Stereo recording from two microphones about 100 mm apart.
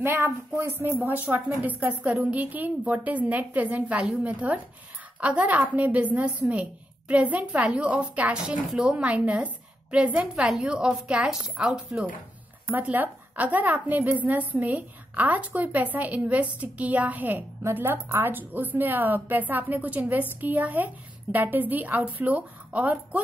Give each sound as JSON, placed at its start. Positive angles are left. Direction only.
{"t": 0.0, "sound": "a woman's voice", "side_deg": -20}